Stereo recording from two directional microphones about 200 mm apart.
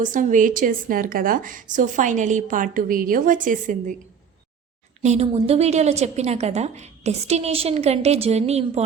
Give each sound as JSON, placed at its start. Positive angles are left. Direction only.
{"t": 0.0, "sound": "a woman's voice", "side_deg": -40}
{"t": 5.0, "sound": "a woman's voice", "side_deg": -35}